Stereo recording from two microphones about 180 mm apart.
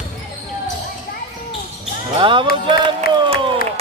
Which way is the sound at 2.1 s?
30° right (ahead or behind).